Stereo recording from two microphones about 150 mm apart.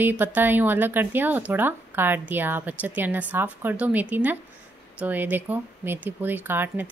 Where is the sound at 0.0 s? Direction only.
10° right (ahead or behind).